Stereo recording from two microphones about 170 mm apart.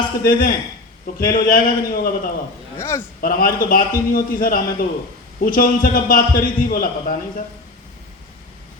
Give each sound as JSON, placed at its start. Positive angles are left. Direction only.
{"t": 0.3, "sound": "a man's voice", "side_deg": 55}
{"t": 2.7, "sound": "a man's voice", "side_deg": 15}
{"t": 3.2, "sound": "a man's voice", "side_deg": 60}